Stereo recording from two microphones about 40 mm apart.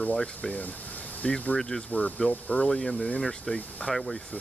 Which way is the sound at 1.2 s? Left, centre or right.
Left.